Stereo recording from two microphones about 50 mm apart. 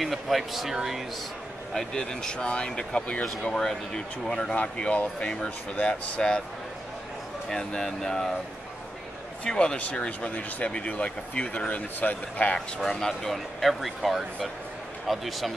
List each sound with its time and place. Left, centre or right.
0.0 s speech: centre
1.7 s speech: centre
4.3 s speech: left
7.4 s speech: centre
9.5 s speech: centre
9.8 s speech: left
13.0 s speech: centre